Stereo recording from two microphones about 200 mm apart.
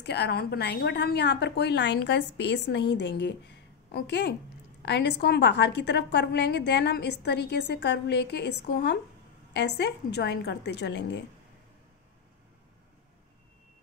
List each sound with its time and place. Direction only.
0.0 s a woman's voice: 55° left (ahead or behind)